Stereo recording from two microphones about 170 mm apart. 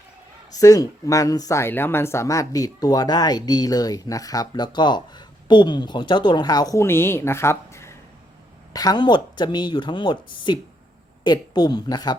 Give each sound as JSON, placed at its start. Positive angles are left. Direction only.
{"t": 0.5, "sound": "speech", "side_deg": 20}